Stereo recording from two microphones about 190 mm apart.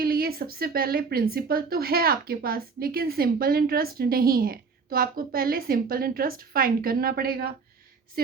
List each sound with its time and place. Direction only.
0.0 s speech: 50° right (ahead or behind)